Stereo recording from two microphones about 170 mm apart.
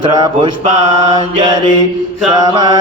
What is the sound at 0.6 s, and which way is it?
Mantra, 40° right (ahead or behind).